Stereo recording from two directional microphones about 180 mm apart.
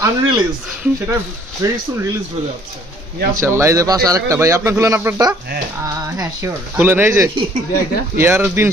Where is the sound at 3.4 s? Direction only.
15° right (ahead or behind).